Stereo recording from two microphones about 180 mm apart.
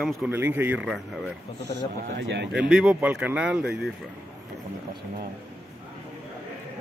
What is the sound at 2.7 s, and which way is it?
Speech, 5° right (ahead or behind).